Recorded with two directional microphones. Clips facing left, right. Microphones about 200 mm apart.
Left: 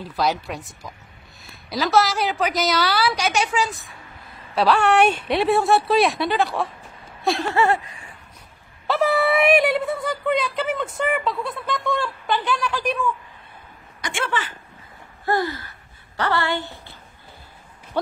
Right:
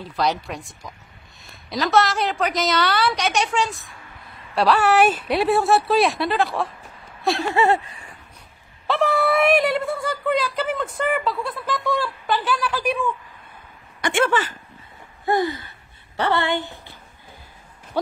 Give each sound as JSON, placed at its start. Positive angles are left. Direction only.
{"t": 0.1, "sound": "speech", "side_deg": 0}
{"t": 7.5, "sound": "a woman's voice", "side_deg": -25}
{"t": 8.8, "sound": "speech", "side_deg": 0}
{"t": 14.0, "sound": "speech", "side_deg": -55}
{"t": 15.2, "sound": "a woman's voice", "side_deg": -20}